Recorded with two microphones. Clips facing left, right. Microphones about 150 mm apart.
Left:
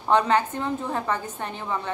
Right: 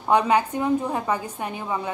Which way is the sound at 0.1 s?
10° right (ahead or behind).